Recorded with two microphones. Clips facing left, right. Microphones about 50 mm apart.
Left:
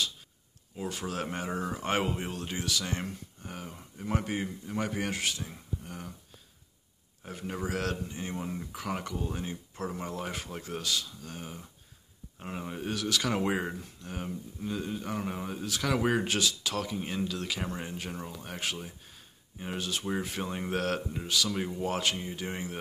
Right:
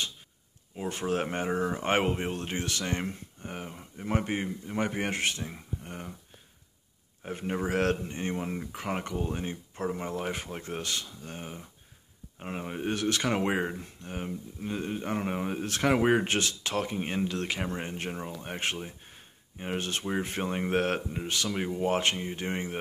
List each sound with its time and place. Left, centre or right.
0.8 s speech: right
3.0 s speech: right
5.4 s speech: right
7.2 s speech: right
8.4 s speech: right
14.7 s speech: right
18.1 s speech: right
19.0 s a sound: right
19.8 s speech: right